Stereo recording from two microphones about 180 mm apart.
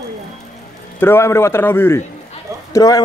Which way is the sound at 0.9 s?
10° left (ahead or behind).